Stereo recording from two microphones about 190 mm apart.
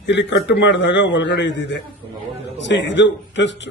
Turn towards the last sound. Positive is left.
turn(degrees=70)  # may be behind; listen again after turning